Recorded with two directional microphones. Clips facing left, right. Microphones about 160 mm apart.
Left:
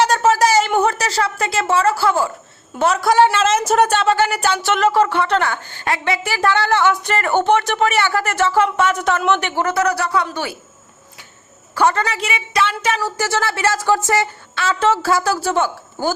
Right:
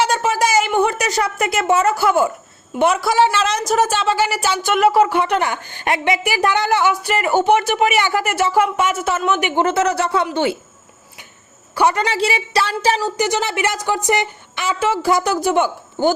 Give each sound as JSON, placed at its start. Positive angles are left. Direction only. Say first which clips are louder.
{"t": 0.2, "sound": "a sound", "louder": "left 3 dB", "side_deg": -10}
{"t": 1.7, "sound": "a woman's voice", "louder": "right 1 dB", "side_deg": -20}
{"t": 2.8, "sound": "a woman's voice", "louder": "left 1 dB", "side_deg": -5}
{"t": 11.7, "sound": "a woman's voice", "louder": "even", "side_deg": -15}
{"t": 12.0, "sound": "speech", "louder": "right 4 dB", "side_deg": -30}
{"t": 13.0, "sound": "a woman's voice", "louder": "right 1 dB", "side_deg": -20}